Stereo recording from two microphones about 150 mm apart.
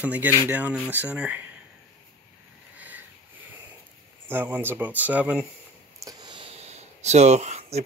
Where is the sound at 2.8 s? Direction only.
10° right (ahead or behind).